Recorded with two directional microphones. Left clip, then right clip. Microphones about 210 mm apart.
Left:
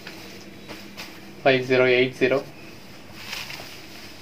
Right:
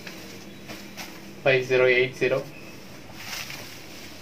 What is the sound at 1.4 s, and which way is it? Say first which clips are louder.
Speech: left 1 dB; 45° left (ahead or behind).